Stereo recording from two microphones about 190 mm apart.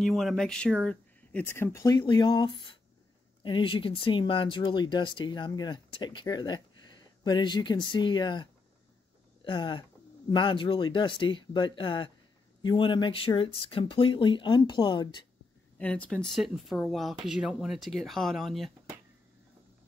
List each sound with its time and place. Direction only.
0.0 s speech: centre (ahead or behind); by 15.2 s 25° left (ahead or behind)
15.8 s speech: 5° left (ahead or behind)